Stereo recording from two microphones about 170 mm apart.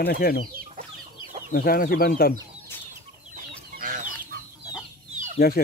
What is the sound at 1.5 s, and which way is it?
Speech, 60° left (ahead or behind).